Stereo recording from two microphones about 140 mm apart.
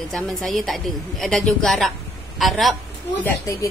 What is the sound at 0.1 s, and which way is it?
A woman's voice, centre (ahead or behind).